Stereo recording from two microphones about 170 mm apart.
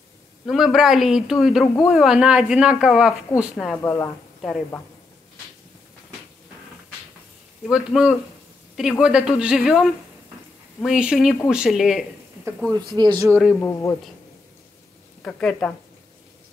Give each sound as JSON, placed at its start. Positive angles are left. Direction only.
{"t": 0.5, "sound": "speech", "side_deg": 0}
{"t": 3.7, "sound": "speech", "side_deg": 15}
{"t": 4.4, "sound": "a woman's voice", "side_deg": 0}
{"t": 7.7, "sound": "speech", "side_deg": -5}
{"t": 12.7, "sound": "speech", "side_deg": -25}
{"t": 13.6, "sound": "speech", "side_deg": 15}
{"t": 15.2, "sound": "speech", "side_deg": 5}